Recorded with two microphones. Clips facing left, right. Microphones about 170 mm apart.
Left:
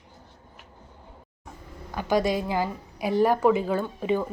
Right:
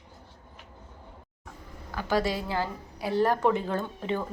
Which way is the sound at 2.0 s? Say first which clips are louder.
Left 4 dB; 15° left (ahead or behind).